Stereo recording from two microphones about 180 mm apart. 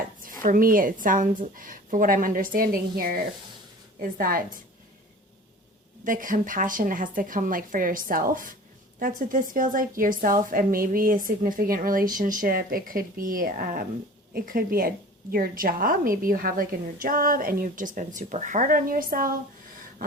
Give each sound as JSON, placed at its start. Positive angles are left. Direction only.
{"t": 0.4, "sound": "a woman's voice", "side_deg": -50}
{"t": 4.2, "sound": "a woman's voice", "side_deg": -50}
{"t": 6.1, "sound": "a woman's voice", "side_deg": -50}